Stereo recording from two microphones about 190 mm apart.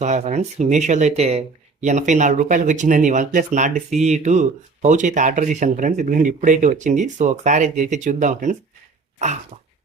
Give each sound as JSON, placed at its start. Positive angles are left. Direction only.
{"t": 0.0, "sound": "speech", "side_deg": -40}
{"t": 9.1, "sound": "throat clearing", "side_deg": -40}